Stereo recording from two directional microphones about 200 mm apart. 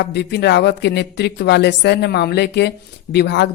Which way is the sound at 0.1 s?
55° left (ahead or behind).